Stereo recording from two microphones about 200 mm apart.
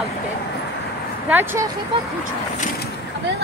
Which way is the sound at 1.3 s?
10° right (ahead or behind).